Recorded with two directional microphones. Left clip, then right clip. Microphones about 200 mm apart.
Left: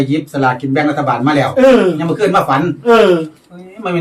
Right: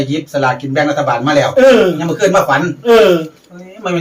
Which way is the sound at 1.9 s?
55° left (ahead or behind).